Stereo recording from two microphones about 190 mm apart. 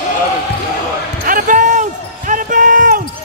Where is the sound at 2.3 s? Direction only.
45° right (ahead or behind).